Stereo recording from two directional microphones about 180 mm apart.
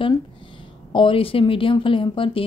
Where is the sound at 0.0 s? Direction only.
30° left (ahead or behind).